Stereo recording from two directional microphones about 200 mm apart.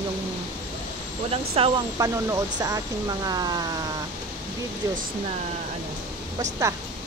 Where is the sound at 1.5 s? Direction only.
25° right (ahead or behind).